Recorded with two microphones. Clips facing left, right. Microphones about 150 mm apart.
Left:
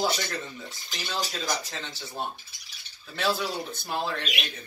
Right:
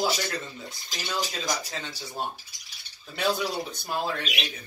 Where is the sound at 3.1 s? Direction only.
15° right (ahead or behind).